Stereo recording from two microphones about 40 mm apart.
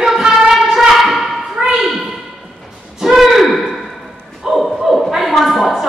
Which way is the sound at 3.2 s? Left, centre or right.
Centre.